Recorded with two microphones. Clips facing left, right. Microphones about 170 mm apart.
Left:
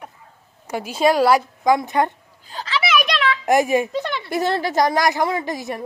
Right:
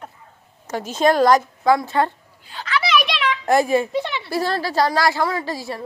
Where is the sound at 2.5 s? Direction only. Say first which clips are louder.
Left 2 dB; 40° left (ahead or behind).